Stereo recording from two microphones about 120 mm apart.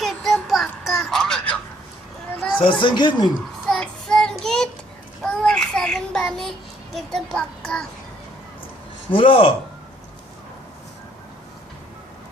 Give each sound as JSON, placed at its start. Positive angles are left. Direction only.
{"t": 0.0, "sound": "child singing", "side_deg": 0}
{"t": 2.6, "sound": "speech", "side_deg": 45}
{"t": 3.7, "sound": "child singing", "side_deg": 5}
{"t": 6.9, "sound": "a child's voice", "side_deg": 5}
{"t": 9.1, "sound": "speech", "side_deg": 50}